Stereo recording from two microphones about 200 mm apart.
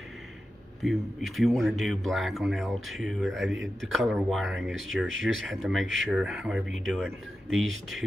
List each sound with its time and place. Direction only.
0.8 s speech: centre (ahead or behind)